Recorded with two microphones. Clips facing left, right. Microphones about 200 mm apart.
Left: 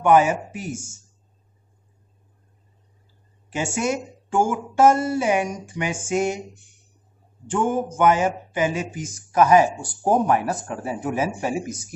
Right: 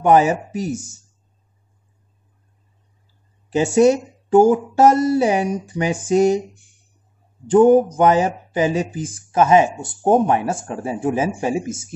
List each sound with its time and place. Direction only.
0.0 s speech: 35° right (ahead or behind)
3.5 s speech: 35° right (ahead or behind)
7.4 s speech: 35° right (ahead or behind)